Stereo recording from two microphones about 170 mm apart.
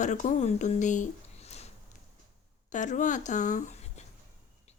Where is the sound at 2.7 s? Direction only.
45° left (ahead or behind).